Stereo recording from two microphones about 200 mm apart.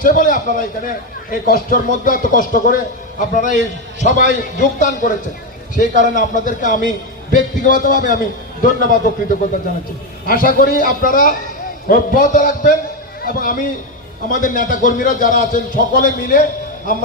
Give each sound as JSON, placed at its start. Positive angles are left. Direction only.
{"t": 0.0, "sound": "a man's voice", "side_deg": 40}
{"t": 10.2, "sound": "a man's voice", "side_deg": 45}